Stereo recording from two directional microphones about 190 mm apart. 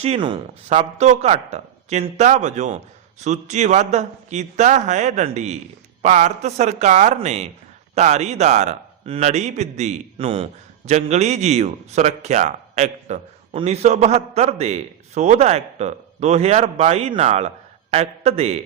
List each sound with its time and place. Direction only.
0.0 s a man's voice: 30° right (ahead or behind)